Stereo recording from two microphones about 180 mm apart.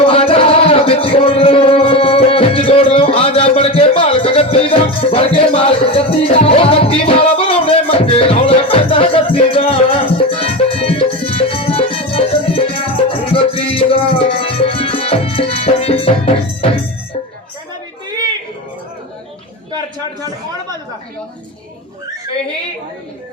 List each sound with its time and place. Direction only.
0.0 s music: 30° left (ahead or behind)